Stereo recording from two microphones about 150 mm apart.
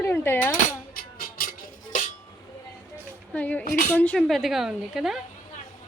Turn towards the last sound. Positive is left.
turn(degrees=0)  # may be behind; listen again after turning